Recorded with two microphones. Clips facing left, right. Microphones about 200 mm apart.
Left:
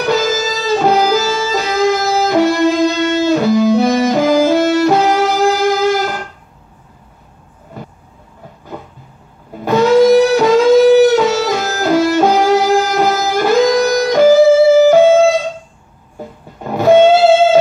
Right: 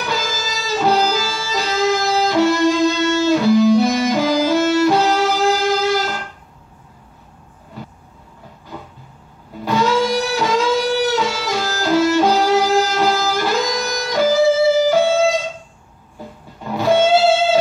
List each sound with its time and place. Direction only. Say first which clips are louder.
0.0 s music: left 9 dB; 45° left (ahead or behind)
9.7 s music: left 9 dB; 45° left (ahead or behind)
16.5 s music: left 7 dB; 50° left (ahead or behind)